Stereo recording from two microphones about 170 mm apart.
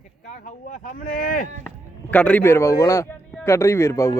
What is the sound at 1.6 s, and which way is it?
A man's voice, 10° left (ahead or behind).